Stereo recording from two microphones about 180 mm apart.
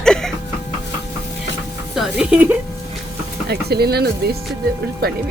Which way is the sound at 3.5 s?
60° right (ahead or behind).